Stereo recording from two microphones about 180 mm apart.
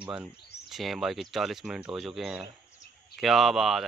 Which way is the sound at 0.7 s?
Centre (ahead or behind).